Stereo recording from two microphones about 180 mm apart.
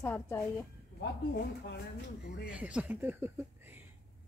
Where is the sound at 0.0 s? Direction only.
15° left (ahead or behind).